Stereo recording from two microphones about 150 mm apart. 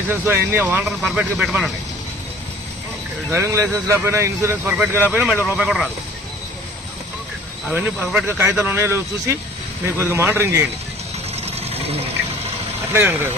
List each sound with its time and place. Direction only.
0.1 s speech: 15° right (ahead or behind)
3.3 s speech: 20° right (ahead or behind); by 5.9 s centre (ahead or behind)
7.7 s speech: 10° right (ahead or behind)
11.3 s vehicle: 45° right (ahead or behind)
12.9 s speech: 15° right (ahead or behind)